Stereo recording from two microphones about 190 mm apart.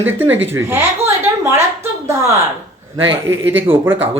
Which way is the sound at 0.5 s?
10° right (ahead or behind).